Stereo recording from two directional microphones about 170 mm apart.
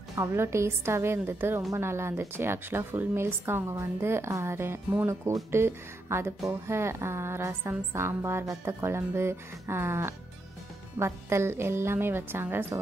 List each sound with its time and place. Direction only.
0.1 s a woman's voice: 15° right (ahead or behind)